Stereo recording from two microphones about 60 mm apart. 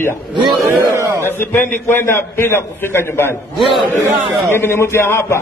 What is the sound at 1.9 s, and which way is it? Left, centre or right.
A man's voice, left.